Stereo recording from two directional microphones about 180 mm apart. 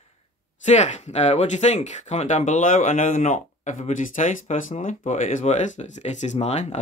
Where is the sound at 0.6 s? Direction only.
40° left (ahead or behind).